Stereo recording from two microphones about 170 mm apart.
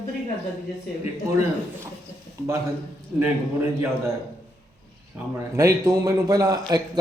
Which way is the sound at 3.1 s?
10° right (ahead or behind).